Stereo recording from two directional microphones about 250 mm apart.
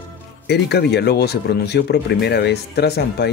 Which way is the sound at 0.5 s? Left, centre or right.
Left.